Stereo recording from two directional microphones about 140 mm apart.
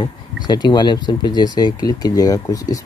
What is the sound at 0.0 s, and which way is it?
Speech, 30° left (ahead or behind).